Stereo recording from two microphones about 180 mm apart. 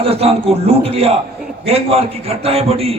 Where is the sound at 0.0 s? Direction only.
35° right (ahead or behind).